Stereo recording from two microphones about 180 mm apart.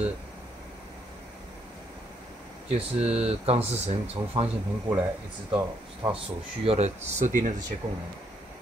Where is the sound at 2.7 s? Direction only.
35° right (ahead or behind).